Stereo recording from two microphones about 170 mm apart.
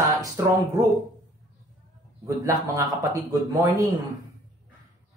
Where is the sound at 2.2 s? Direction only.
20° right (ahead or behind).